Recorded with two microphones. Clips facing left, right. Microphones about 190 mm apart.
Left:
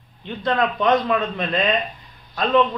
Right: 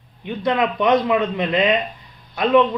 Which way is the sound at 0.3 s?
15° right (ahead or behind).